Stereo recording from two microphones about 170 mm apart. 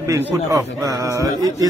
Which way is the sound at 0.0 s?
15° right (ahead or behind).